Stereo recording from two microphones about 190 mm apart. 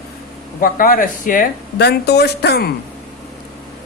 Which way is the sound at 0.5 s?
50° left (ahead or behind).